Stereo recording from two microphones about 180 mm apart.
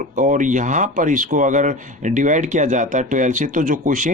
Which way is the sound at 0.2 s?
45° right (ahead or behind).